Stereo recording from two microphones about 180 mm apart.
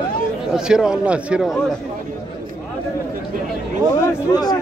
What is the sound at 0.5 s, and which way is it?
A man's voice, 5° right (ahead or behind).